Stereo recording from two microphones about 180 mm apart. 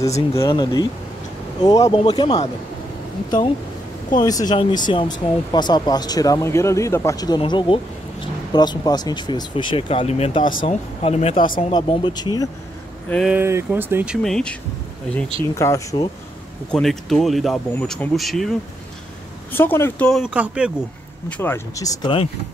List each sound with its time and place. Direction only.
0.3 s speech: 20° left (ahead or behind)
4.2 s speech: 20° left (ahead or behind)
10.5 s speech: 50° left (ahead or behind)
11.0 s speech: 35° left (ahead or behind)
11.3 s speech: 50° left (ahead or behind)
11.7 s speech: 25° left (ahead or behind)
13.3 s speech: 15° right (ahead or behind); by 14.5 s 5° left (ahead or behind)
15.5 s speech: 15° left (ahead or behind)
16.7 s speech: centre (ahead or behind)
19.5 s speech: 10° left (ahead or behind); by 20.7 s 5° right (ahead or behind)
21.3 s speech: 10° left (ahead or behind)